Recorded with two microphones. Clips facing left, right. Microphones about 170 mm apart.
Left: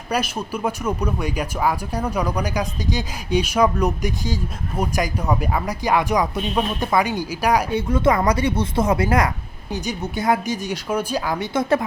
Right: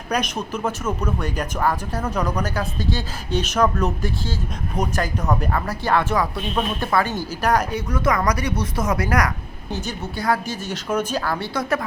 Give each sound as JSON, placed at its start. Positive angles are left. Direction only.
{"t": 0.1, "sound": "speech", "side_deg": 10}
{"t": 7.7, "sound": "speech", "side_deg": 25}